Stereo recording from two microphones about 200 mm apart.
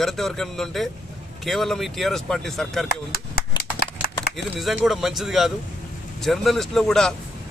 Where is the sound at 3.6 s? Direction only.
50° left (ahead or behind).